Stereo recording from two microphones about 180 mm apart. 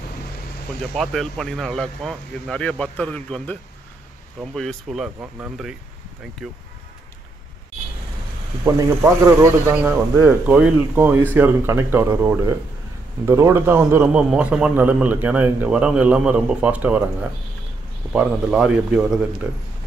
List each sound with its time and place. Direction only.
0.9 s speech: centre (ahead or behind)
8.6 s a man's voice: 15° right (ahead or behind)